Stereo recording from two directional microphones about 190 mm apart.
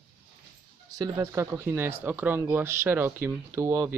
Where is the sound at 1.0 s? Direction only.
15° right (ahead or behind).